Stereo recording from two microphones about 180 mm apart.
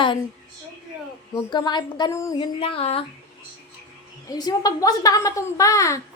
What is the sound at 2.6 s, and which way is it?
Speech, 35° left (ahead or behind).